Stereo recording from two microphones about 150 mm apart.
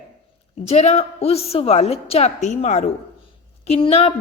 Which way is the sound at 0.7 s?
45° left (ahead or behind).